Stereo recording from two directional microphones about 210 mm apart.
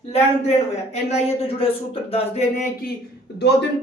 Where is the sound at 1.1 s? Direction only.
30° left (ahead or behind).